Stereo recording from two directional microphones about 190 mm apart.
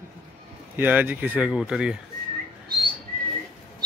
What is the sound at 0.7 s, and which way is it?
Speech, 10° right (ahead or behind).